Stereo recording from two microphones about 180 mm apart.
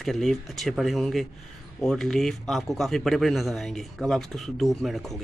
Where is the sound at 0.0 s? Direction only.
Centre (ahead or behind).